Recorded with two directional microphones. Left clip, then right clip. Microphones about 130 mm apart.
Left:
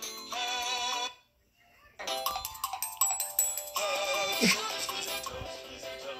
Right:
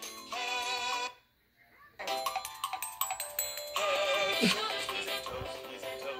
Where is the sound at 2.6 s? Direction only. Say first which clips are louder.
Left 2 dB; 20° left (ahead or behind).